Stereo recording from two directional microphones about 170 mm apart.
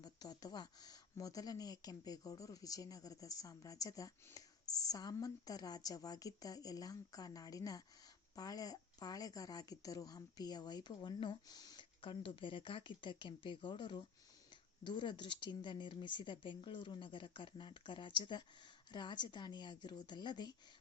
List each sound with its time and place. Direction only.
0.0 s speech: 25° left (ahead or behind)